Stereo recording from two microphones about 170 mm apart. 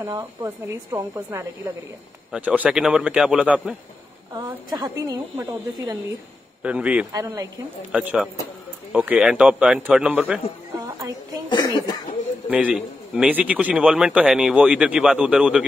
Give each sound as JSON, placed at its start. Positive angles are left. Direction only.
{"t": 0.0, "sound": "a man's voice", "side_deg": -15}
{"t": 4.6, "sound": "a woman's voice", "side_deg": -25}
{"t": 6.6, "sound": "a man's voice", "side_deg": -5}
{"t": 7.1, "sound": "a woman's voice", "side_deg": -20}
{"t": 7.9, "sound": "a man's voice", "side_deg": -5}
{"t": 11.5, "sound": "speech", "side_deg": 25}
{"t": 12.4, "sound": "a man's voice", "side_deg": -5}